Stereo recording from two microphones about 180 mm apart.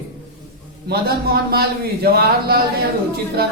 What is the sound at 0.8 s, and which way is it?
Speech, 60° right (ahead or behind).